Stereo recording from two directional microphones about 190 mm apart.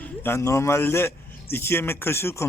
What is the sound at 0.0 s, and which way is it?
A man's voice, 10° left (ahead or behind).